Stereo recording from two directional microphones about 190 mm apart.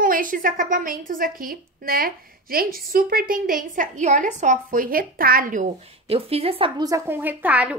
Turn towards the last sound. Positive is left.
turn(degrees=-5)  # may be behind; listen again after turning